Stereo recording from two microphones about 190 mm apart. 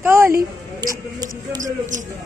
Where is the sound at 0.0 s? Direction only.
15° right (ahead or behind).